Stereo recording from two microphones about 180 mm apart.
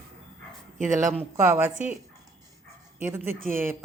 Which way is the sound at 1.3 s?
15° right (ahead or behind).